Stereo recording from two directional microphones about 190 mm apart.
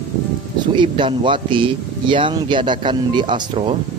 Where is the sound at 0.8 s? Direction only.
25° right (ahead or behind).